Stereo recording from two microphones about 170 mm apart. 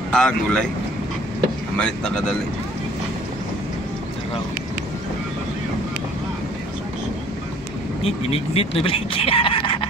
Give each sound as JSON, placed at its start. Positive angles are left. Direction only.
{"t": 0.1, "sound": "speech", "side_deg": 5}
{"t": 1.8, "sound": "speech", "side_deg": 5}
{"t": 8.0, "sound": "speech", "side_deg": 35}